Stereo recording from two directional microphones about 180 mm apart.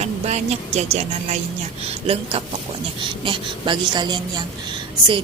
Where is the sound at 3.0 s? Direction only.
25° right (ahead or behind).